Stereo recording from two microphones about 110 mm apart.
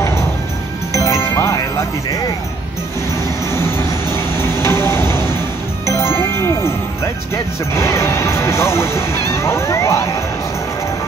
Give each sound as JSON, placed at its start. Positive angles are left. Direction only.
{"t": 0.9, "sound": "music", "side_deg": 30}
{"t": 3.5, "sound": "train", "side_deg": 25}
{"t": 4.4, "sound": "music", "side_deg": 25}
{"t": 5.9, "sound": "jingle", "side_deg": 25}
{"t": 7.7, "sound": "speech", "side_deg": 25}